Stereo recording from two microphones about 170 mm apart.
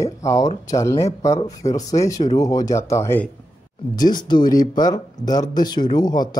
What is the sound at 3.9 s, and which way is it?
Speech, 25° left (ahead or behind).